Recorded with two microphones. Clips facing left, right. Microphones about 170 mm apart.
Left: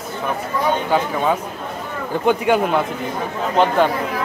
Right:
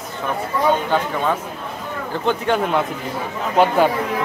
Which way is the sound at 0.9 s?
10° left (ahead or behind).